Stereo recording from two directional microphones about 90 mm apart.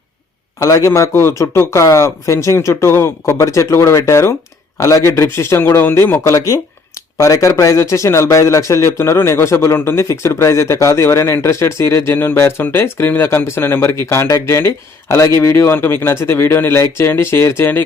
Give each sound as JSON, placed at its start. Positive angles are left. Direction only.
{"t": 0.9, "sound": "a man's voice", "side_deg": 30}
{"t": 7.2, "sound": "a man's voice", "side_deg": 35}